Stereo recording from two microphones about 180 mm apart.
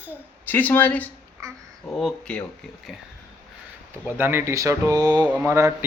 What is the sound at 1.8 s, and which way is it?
Speech, 5° left (ahead or behind).